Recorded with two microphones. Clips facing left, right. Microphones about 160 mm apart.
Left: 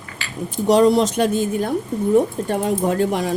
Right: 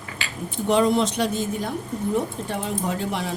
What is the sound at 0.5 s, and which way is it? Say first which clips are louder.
Speech: left 5 dB; 40° left (ahead or behind).